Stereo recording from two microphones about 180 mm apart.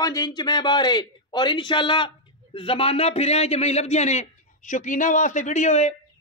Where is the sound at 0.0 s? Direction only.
20° left (ahead or behind).